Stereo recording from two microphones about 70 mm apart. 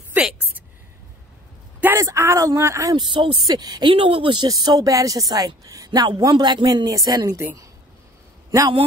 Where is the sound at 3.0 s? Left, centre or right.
Right.